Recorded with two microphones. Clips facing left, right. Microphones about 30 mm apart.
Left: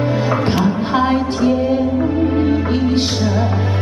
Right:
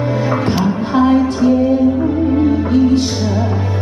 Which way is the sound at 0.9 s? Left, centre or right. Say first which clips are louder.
Right 6 dB; left.